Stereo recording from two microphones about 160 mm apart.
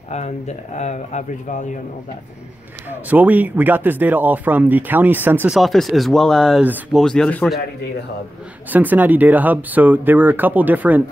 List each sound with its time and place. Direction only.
0.1 s speech: 45° left (ahead or behind)
2.9 s speech: 10° right (ahead or behind)
5.6 s speech: centre (ahead or behind)
8.6 s speech: 10° right (ahead or behind)